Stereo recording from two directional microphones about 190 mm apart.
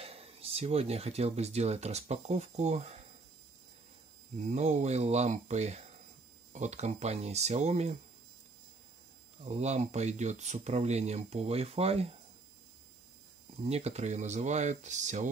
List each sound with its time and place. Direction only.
0.0 s speech: 30° right (ahead or behind)
4.4 s speech: 40° right (ahead or behind)
9.4 s speech: 35° right (ahead or behind)
13.7 s speech: 35° right (ahead or behind)